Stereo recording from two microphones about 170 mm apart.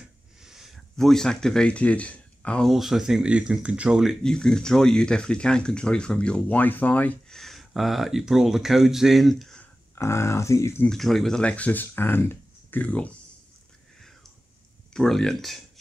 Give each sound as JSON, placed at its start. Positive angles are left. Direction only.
{"t": 0.4, "sound": "speech", "side_deg": 0}
{"t": 9.9, "sound": "speech", "side_deg": 15}
{"t": 10.9, "sound": "speech", "side_deg": 0}
{"t": 15.0, "sound": "speech", "side_deg": 0}